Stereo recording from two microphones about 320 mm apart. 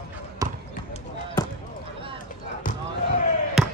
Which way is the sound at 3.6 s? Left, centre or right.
Centre.